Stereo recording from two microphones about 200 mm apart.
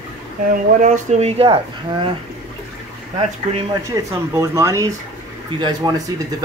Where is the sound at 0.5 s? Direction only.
40° right (ahead or behind).